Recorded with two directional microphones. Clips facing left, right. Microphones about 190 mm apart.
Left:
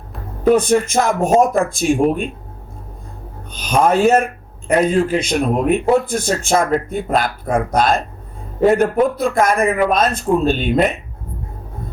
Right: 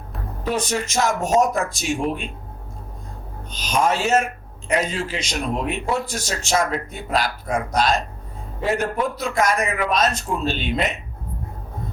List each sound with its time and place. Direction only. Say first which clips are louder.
0.4 s a man's voice: left 11 dB; 55° left (ahead or behind)
3.5 s a man's voice: left 6 dB; 55° left (ahead or behind)